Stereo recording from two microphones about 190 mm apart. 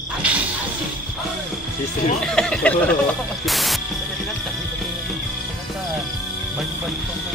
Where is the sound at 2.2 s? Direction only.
5° left (ahead or behind).